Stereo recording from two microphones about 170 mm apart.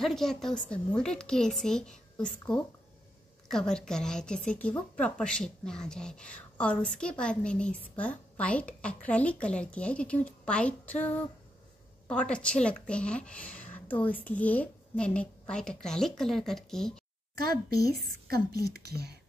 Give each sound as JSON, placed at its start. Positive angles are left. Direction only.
{"t": 0.0, "sound": "a woman's voice", "side_deg": 0}
{"t": 17.4, "sound": "a woman's voice", "side_deg": -65}